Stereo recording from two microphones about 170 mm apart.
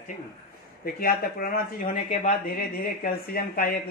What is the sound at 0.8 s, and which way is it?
Speech, 60° left (ahead or behind).